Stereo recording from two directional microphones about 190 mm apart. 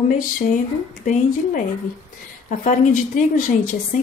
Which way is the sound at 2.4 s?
40° left (ahead or behind).